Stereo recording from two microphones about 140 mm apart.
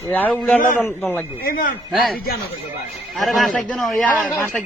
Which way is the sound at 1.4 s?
90° left.